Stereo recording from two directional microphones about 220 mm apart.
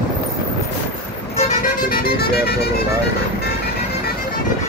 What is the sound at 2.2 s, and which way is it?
Speech, 45° left (ahead or behind).